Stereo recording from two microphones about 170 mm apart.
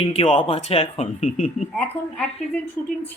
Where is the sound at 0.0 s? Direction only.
35° left (ahead or behind).